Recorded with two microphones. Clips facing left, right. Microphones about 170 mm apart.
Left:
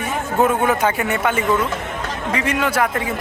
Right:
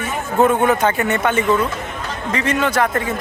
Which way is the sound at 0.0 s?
5° left (ahead or behind).